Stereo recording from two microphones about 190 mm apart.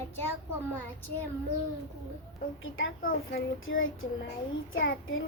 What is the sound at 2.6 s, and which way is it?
Speech, 90° left.